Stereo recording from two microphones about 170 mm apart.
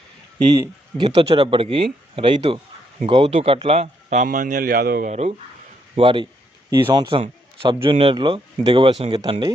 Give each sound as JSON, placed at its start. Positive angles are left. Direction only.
{"t": 0.5, "sound": "speech", "side_deg": -25}
{"t": 1.1, "sound": "a man's voice", "side_deg": -35}
{"t": 6.0, "sound": "a man's voice", "side_deg": -30}